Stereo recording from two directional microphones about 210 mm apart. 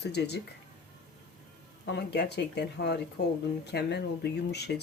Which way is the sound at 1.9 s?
55° left (ahead or behind).